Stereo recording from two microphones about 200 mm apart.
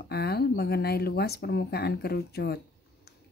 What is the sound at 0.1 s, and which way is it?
Speech, 55° left (ahead or behind).